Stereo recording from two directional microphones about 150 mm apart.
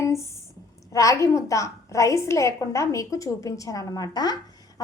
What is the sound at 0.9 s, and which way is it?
A woman's voice, 20° left (ahead or behind).